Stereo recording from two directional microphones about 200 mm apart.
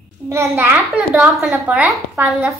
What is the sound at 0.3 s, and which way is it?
A child's voice, 15° right (ahead or behind).